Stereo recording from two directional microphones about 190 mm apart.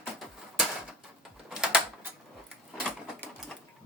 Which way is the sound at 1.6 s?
5° right (ahead or behind).